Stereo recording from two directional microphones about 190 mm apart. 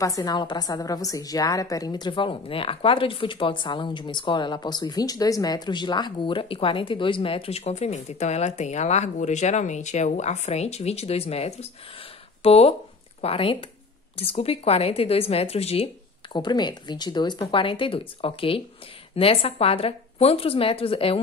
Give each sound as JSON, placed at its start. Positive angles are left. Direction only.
{"t": 0.0, "sound": "a woman's voice", "side_deg": 20}